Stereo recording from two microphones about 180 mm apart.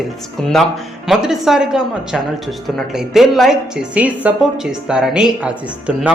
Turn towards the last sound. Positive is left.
turn(degrees=-5)  # may be behind; listen again after turning